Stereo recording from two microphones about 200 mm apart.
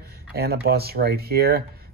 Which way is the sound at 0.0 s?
50° right (ahead or behind).